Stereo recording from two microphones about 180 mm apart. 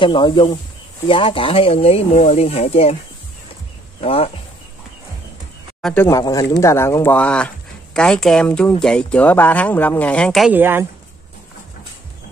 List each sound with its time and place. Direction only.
0.0 s speech: 25° left (ahead or behind)
4.0 s speech: 35° left (ahead or behind)
5.8 s a sound: 5° left (ahead or behind)
6.0 s speech: 20° left (ahead or behind)
10.5 s a woman's voice: 10° right (ahead or behind)